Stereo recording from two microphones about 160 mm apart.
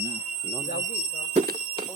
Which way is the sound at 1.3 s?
60° right (ahead or behind).